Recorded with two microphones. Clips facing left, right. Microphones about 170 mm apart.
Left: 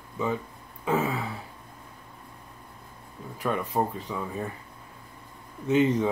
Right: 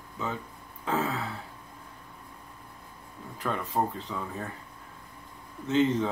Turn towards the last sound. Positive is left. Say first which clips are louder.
# left 2 dB
turn(degrees=10)  # may be behind; listen again after turning